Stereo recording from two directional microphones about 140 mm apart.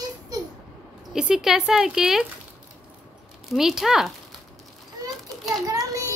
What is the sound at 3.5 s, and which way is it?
Speech, 5° right (ahead or behind).